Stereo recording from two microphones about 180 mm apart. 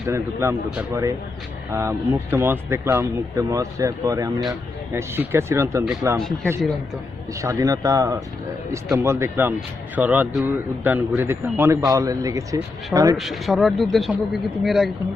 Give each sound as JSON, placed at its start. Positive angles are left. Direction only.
{"t": 0.0, "sound": "speech", "side_deg": -15}
{"t": 6.1, "sound": "speech", "side_deg": 0}
{"t": 7.4, "sound": "speech", "side_deg": -20}
{"t": 13.1, "sound": "speech", "side_deg": 0}